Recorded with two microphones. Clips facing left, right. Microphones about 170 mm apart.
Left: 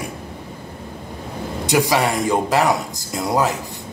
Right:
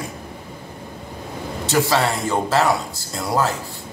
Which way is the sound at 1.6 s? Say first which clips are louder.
Left 1 dB; 15° left (ahead or behind).